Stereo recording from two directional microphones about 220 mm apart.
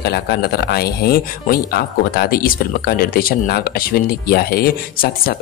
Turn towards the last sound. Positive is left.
turn(degrees=45)  # may be behind; listen again after turning